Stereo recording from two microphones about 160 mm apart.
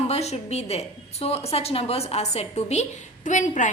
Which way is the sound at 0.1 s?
40° left (ahead or behind).